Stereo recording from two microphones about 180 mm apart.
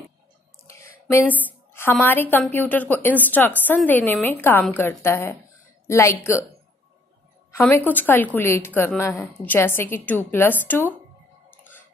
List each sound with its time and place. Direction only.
0.7 s a sound: 15° left (ahead or behind)
1.7 s a woman's voice: 10° left (ahead or behind)
7.5 s a woman's voice: 10° left (ahead or behind)
11.5 s music: 10° left (ahead or behind)